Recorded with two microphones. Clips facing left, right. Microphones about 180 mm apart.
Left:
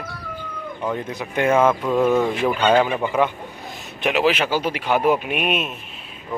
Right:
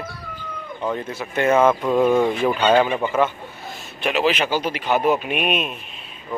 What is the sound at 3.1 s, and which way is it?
A man's voice, 15° left (ahead or behind).